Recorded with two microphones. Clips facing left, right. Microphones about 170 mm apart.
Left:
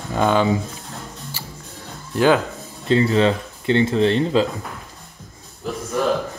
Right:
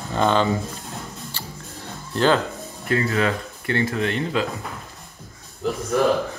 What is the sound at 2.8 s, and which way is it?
Speech, 25° left (ahead or behind).